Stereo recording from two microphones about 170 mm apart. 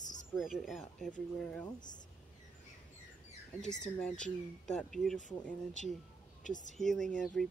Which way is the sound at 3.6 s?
5° left (ahead or behind).